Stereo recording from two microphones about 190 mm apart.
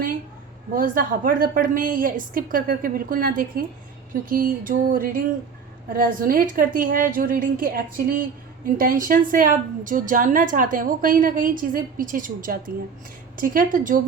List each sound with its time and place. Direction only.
0.8 s a woman's voice: 45° right (ahead or behind)